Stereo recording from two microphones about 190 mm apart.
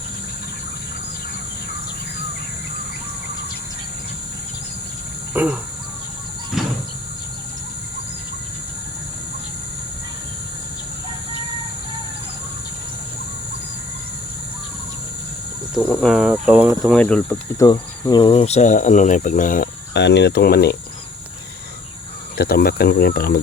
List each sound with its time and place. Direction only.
5.3 s insect: 10° right (ahead or behind)
15.7 s speech: 5° left (ahead or behind)
17.7 s speech: 25° left (ahead or behind); by 19.6 s 45° left (ahead or behind)
19.9 s speech: 65° left (ahead or behind)
22.4 s speech: 55° left (ahead or behind)